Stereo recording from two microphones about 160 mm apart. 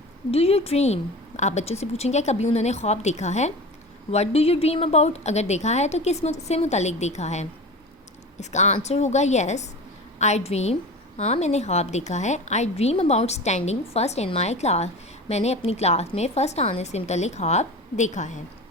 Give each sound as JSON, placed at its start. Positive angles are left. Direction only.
{"t": 0.3, "sound": "a woman's voice", "side_deg": 40}